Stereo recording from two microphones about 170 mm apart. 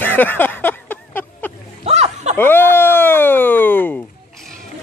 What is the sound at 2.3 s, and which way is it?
Speech, 10° left (ahead or behind).